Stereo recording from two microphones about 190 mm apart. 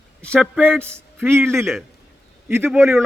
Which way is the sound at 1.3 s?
10° right (ahead or behind).